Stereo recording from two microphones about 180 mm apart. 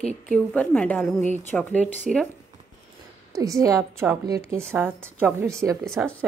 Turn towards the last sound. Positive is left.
turn(degrees=5)  # may be behind; listen again after turning